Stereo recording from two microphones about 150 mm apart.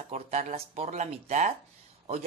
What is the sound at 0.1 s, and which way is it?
Speech, 50° right (ahead or behind).